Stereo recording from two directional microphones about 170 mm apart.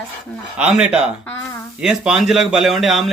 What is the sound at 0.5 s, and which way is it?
Speech, 5° right (ahead or behind).